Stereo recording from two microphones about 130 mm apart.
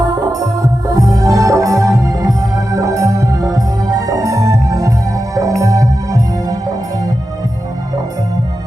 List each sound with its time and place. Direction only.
0.0 s music: 30° right (ahead or behind)